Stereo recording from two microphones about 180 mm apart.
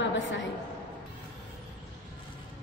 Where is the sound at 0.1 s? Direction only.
90° left.